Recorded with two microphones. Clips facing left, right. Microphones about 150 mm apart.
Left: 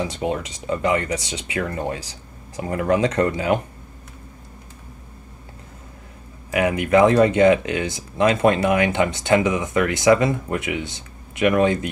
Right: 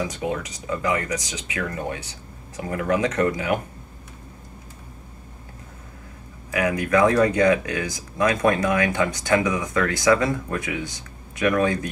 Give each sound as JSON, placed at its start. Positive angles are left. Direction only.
{"t": 0.0, "sound": "speech", "side_deg": 25}
{"t": 6.5, "sound": "speech", "side_deg": 25}